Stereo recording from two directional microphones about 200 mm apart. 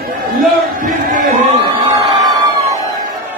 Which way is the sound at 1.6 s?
20° right (ahead or behind).